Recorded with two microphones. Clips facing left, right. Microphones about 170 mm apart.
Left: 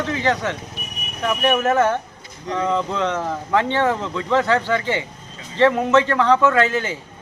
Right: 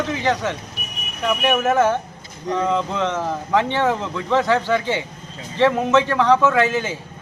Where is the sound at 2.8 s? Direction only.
20° right (ahead or behind).